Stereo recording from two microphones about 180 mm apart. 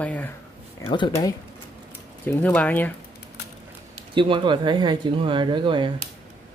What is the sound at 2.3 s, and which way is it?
Speech, 10° left (ahead or behind).